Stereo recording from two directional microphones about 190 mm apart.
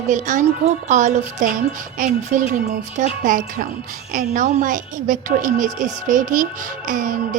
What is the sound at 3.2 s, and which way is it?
A woman's voice, 45° right (ahead or behind).